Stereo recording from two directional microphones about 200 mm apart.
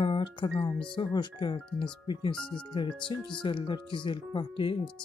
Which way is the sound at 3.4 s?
25° left (ahead or behind).